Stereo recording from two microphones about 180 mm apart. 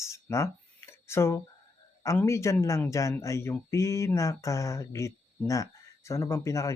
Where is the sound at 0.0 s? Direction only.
15° left (ahead or behind).